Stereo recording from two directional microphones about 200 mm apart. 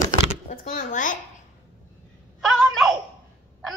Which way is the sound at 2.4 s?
Centre (ahead or behind).